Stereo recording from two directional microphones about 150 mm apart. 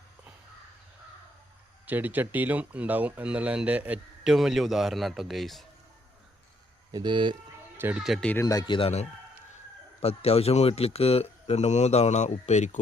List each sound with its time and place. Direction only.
1.9 s speech: 10° right (ahead or behind)
6.9 s speech: 30° right (ahead or behind)
7.8 s speech: 15° right (ahead or behind)
8.0 s speech: centre (ahead or behind)
8.3 s speech: 20° left (ahead or behind); by 12.8 s 50° left (ahead or behind)